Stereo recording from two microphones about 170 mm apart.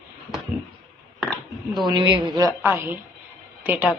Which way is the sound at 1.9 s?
25° right (ahead or behind).